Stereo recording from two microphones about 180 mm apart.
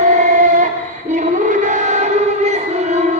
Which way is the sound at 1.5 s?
45° right (ahead or behind).